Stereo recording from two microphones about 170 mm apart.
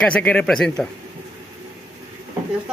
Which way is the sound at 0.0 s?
5° left (ahead or behind).